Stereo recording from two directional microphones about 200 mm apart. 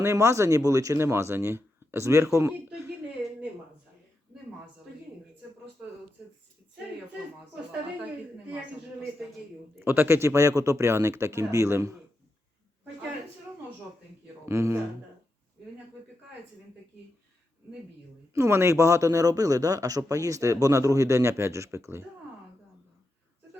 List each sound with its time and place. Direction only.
0.0 s speech: 15° right (ahead or behind)
9.7 s speech: 10° right (ahead or behind)
14.4 s speech: 15° right (ahead or behind)
18.3 s speech: 15° right (ahead or behind)